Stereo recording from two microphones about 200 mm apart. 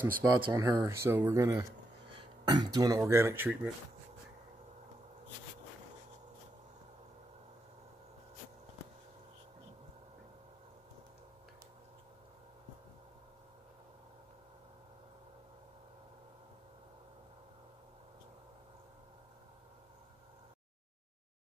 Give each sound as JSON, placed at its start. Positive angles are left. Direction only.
{"t": 0.2, "sound": "speech", "side_deg": -15}